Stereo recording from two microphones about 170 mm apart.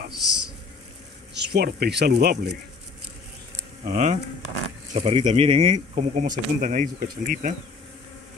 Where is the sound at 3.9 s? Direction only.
40° right (ahead or behind).